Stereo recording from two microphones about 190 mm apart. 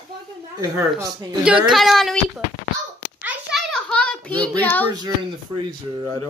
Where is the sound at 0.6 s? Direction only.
20° right (ahead or behind).